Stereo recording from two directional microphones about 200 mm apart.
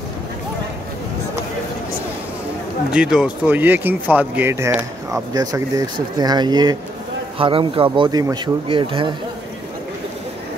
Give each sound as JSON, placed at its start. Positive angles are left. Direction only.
{"t": 2.9, "sound": "speech", "side_deg": -5}